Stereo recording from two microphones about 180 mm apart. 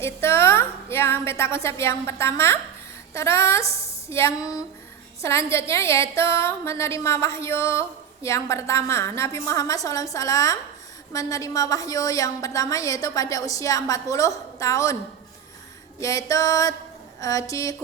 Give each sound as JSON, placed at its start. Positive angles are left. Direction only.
{"t": 0.0, "sound": "a woman's voice", "side_deg": 15}
{"t": 16.0, "sound": "a woman's voice", "side_deg": 20}